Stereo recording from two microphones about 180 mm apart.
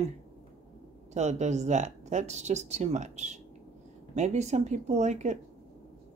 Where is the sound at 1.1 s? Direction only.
40° right (ahead or behind).